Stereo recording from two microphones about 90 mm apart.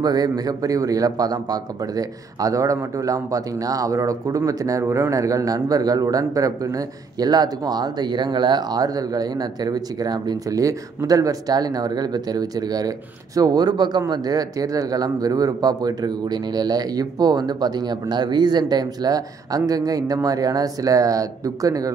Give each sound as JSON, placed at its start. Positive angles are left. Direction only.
{"t": 0.0, "sound": "a man's voice", "side_deg": -45}